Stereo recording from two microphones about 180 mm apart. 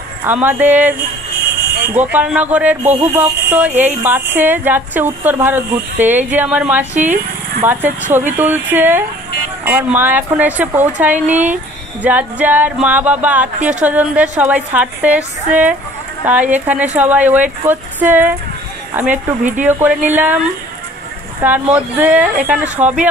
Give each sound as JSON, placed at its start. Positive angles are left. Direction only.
{"t": 0.2, "sound": "speech", "side_deg": -10}
{"t": 6.9, "sound": "speech", "side_deg": -40}
{"t": 7.6, "sound": "speech", "side_deg": -10}
{"t": 16.3, "sound": "speech", "side_deg": -10}
{"t": 21.5, "sound": "speech", "side_deg": -10}